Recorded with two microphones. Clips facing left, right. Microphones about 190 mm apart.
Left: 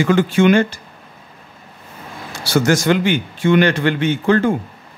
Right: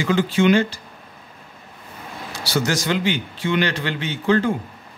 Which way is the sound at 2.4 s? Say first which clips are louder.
Left 7 dB; 50° left (ahead or behind).